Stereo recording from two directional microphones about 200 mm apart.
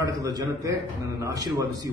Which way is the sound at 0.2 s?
15° right (ahead or behind).